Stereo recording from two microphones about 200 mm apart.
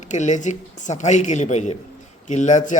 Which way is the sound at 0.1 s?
35° left (ahead or behind).